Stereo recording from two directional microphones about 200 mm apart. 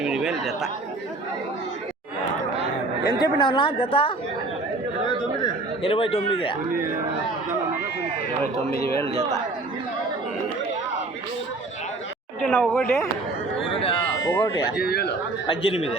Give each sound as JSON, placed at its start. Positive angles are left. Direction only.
{"t": 0.0, "sound": "speech", "side_deg": -5}
{"t": 3.2, "sound": "a man's voice", "side_deg": 25}
{"t": 5.4, "sound": "a man's voice", "side_deg": 25}
{"t": 12.4, "sound": "speech", "side_deg": 5}
{"t": 13.7, "sound": "a man's voice", "side_deg": 25}
{"t": 14.2, "sound": "speech", "side_deg": 75}
{"t": 14.8, "sound": "speech", "side_deg": 50}
{"t": 15.4, "sound": "a man's voice", "side_deg": 30}